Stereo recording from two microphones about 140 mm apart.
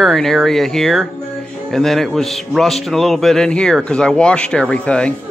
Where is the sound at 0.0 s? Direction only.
Centre (ahead or behind).